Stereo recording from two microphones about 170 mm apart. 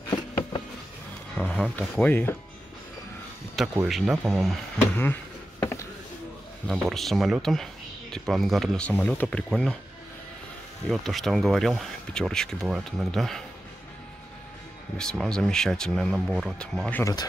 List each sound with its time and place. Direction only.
1.3 s speech: 5° left (ahead or behind)
3.8 s speech: centre (ahead or behind)
4.7 s speech: 15° left (ahead or behind)
5.6 s a sound: 15° left (ahead or behind)
6.7 s speech: centre (ahead or behind)
10.9 s speech: centre (ahead or behind)
15.0 s speech: 5° left (ahead or behind)
17.0 s speech: 25° left (ahead or behind)